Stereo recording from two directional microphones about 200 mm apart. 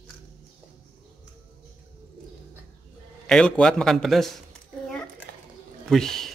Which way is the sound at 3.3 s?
5° left (ahead or behind).